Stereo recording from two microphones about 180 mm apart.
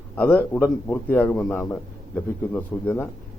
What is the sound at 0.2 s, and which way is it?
A man's voice, 10° left (ahead or behind).